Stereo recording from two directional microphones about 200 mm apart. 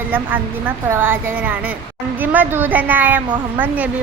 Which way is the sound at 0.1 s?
10° right (ahead or behind).